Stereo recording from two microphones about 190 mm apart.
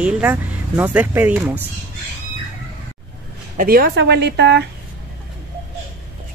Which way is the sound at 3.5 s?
50° right (ahead or behind).